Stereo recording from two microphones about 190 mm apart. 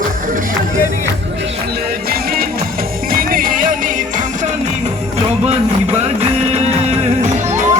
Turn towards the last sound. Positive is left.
turn(degrees=-40)  # may be behind; listen again after turning